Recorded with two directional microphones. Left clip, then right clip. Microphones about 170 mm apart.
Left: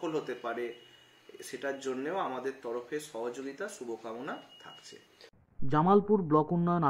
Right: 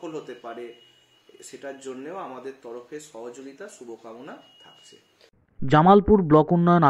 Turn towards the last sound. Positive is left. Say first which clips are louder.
# right 11 dB
turn(degrees=-30)  # may be behind; listen again after turning